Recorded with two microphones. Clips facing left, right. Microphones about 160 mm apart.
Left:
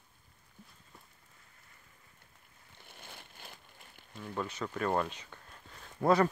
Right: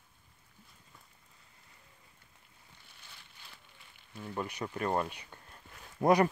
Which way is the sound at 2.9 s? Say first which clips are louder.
Left 9 dB; 50° left (ahead or behind).